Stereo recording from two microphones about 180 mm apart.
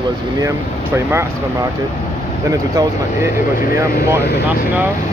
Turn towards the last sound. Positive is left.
turn(degrees=-20)  # may be behind; listen again after turning